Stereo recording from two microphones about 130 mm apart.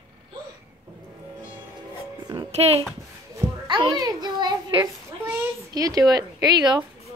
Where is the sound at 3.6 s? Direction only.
35° right (ahead or behind).